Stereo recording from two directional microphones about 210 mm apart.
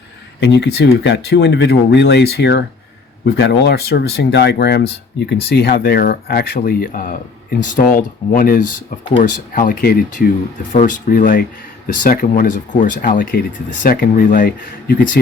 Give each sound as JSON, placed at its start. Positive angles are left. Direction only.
{"t": 0.3, "sound": "speech", "side_deg": 55}